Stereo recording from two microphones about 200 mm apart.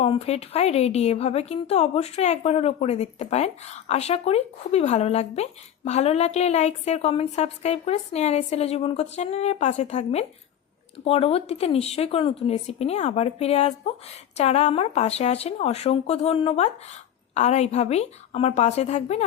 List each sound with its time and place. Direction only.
0.0 s a woman's voice: 30° left (ahead or behind)